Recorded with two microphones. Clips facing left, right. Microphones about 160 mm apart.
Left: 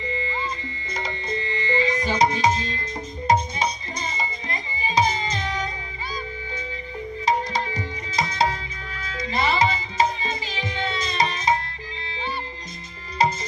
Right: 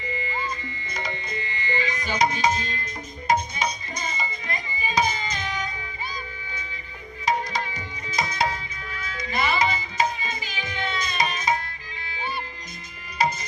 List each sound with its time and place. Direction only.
0.0 s music: 25° left (ahead or behind)
0.9 s tabla: 30° left (ahead or behind)
3.2 s music: 30° left (ahead or behind)
7.3 s music: 30° left (ahead or behind)